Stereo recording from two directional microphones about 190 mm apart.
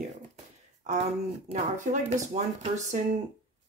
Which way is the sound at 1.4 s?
40° right (ahead or behind).